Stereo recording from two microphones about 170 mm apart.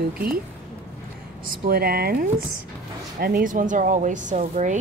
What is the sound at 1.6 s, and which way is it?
Speech, 60° right (ahead or behind).